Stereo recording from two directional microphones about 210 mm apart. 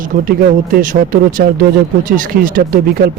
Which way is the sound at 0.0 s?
40° right (ahead or behind).